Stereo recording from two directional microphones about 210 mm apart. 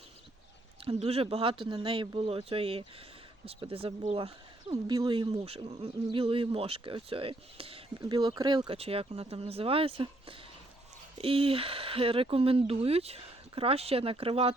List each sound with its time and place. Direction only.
0.9 s speech: 30° right (ahead or behind)
4.7 s speech: 15° right (ahead or behind)